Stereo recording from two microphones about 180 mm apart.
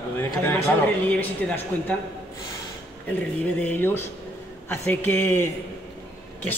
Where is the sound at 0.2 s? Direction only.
15° left (ahead or behind).